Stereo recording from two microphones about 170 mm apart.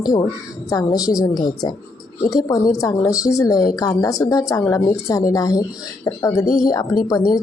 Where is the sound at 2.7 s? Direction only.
20° left (ahead or behind).